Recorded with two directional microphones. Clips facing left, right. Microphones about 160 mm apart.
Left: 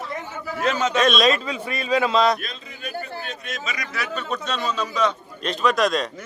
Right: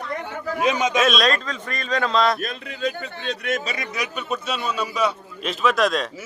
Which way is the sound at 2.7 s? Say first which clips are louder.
Right 10 dB; 90° right.